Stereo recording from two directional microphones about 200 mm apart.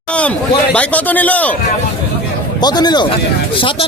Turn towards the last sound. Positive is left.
turn(degrees=20)  # may be behind; listen again after turning